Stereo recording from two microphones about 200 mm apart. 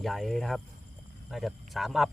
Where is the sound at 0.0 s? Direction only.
Centre (ahead or behind).